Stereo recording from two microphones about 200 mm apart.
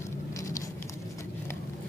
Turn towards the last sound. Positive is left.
turn(degrees=15)  # may be behind; listen again after turning